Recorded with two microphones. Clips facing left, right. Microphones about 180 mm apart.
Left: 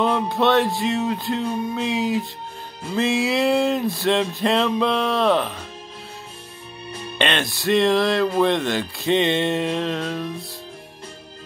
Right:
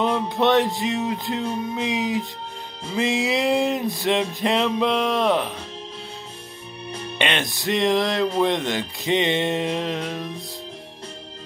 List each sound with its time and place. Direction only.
0.0 s speech: 20° right (ahead or behind)
7.2 s speech: 15° right (ahead or behind)